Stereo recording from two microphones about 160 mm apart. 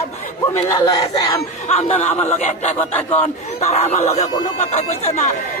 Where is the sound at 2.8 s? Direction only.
10° left (ahead or behind).